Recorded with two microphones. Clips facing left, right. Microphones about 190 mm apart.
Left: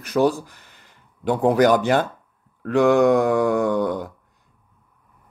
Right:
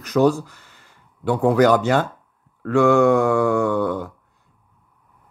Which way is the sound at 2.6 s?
15° left (ahead or behind).